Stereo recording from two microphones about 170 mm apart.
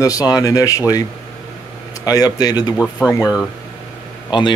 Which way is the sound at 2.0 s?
20° left (ahead or behind).